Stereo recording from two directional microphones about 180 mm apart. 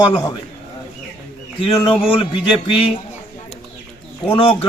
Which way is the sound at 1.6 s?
30° left (ahead or behind).